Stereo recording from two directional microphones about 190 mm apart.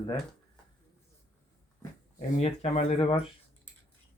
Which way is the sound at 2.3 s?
35° left (ahead or behind).